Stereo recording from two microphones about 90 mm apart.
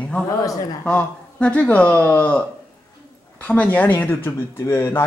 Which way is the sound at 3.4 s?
15° left (ahead or behind).